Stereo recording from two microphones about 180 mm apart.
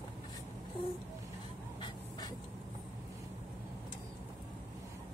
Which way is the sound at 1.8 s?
25° left (ahead or behind).